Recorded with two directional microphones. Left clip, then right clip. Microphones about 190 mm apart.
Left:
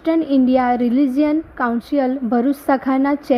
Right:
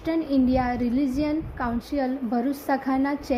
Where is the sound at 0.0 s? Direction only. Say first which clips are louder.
Left 7 dB; 40° left (ahead or behind).